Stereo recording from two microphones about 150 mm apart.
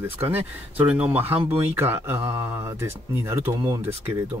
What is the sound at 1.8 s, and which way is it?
Speech, 15° right (ahead or behind).